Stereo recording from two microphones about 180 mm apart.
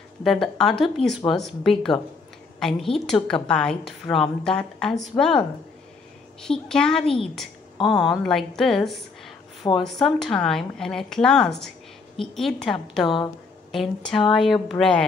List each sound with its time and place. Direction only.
0.2 s a woman's voice: centre (ahead or behind)
6.4 s a woman's voice: 5° left (ahead or behind)
7.7 s a sound: 25° left (ahead or behind)
8.0 s a woman's voice: centre (ahead or behind)